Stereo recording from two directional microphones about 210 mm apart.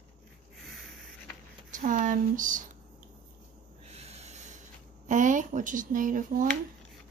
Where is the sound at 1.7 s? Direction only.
40° right (ahead or behind).